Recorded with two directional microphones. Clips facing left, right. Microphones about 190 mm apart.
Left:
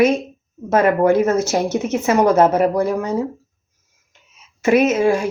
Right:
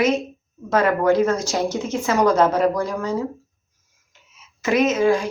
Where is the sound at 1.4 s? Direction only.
65° left (ahead or behind).